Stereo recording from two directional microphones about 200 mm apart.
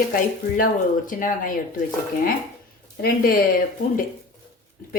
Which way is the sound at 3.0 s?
50° left (ahead or behind).